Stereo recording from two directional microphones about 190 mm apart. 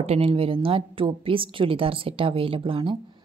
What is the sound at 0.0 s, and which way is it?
A woman's voice, 30° right (ahead or behind).